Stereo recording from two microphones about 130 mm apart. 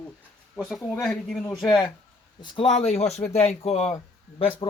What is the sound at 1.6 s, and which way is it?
Speech, 35° left (ahead or behind).